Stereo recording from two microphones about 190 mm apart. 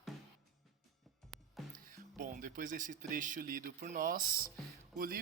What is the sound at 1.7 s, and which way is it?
Speech, 45° right (ahead or behind).